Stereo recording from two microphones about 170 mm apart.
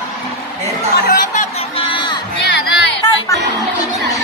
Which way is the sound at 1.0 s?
55° left (ahead or behind).